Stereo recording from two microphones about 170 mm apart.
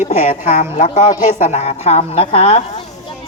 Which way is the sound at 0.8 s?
50° left (ahead or behind).